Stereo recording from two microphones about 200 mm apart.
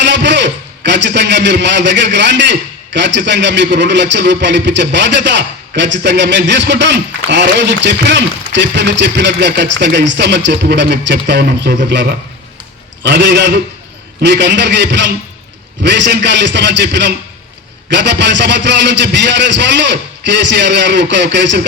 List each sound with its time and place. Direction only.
0.0 s a man's voice: 60° right (ahead or behind)